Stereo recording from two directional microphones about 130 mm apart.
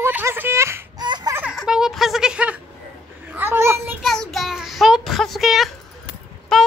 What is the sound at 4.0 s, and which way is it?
Child singing, centre (ahead or behind).